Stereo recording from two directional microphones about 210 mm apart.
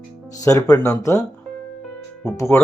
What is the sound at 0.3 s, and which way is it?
Speech, 15° left (ahead or behind).